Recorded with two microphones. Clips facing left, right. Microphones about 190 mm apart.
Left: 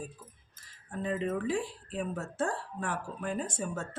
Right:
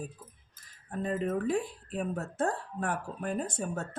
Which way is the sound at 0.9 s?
50° right (ahead or behind).